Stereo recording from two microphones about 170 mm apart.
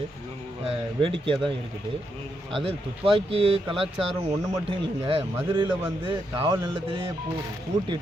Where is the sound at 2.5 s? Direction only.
30° right (ahead or behind).